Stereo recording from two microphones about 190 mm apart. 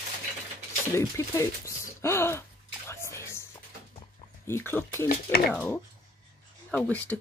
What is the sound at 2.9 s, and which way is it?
Whispering, 15° left (ahead or behind).